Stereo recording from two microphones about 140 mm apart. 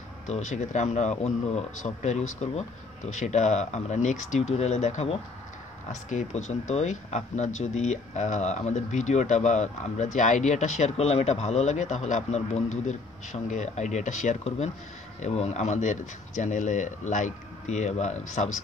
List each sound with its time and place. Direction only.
0.3 s speech: 55° left (ahead or behind)